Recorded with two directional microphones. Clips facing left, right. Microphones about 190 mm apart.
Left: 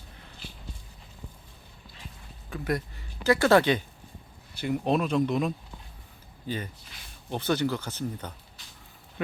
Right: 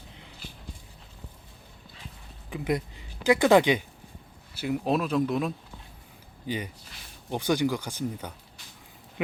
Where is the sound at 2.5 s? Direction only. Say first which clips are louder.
Right 2 dB; 15° right (ahead or behind).